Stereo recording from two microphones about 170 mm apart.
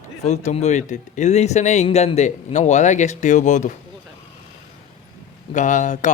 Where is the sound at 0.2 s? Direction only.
40° left (ahead or behind).